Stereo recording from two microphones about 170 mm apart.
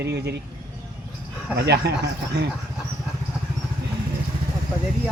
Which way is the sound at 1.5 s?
70° right (ahead or behind).